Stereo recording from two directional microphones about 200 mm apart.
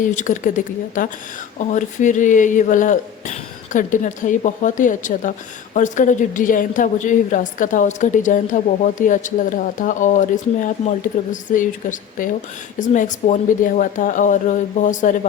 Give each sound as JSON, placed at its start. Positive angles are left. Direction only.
{"t": 0.0, "sound": "a woman's voice", "side_deg": 40}